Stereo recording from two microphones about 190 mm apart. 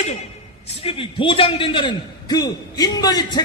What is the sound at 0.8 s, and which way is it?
A man's voice, 30° left (ahead or behind).